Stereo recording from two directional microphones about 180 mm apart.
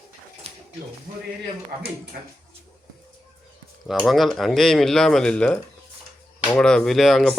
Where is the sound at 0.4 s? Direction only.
35° right (ahead or behind).